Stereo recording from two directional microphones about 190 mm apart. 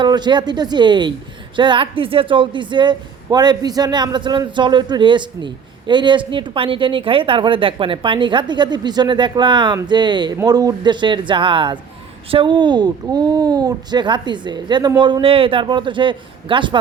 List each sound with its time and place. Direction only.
0.0 s speech: 25° right (ahead or behind)